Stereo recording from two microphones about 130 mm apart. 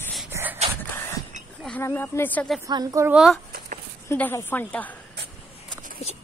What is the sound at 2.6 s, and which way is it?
Speech, 25° right (ahead or behind).